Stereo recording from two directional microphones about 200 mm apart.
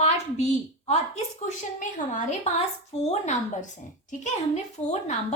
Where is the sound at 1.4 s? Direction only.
40° left (ahead or behind).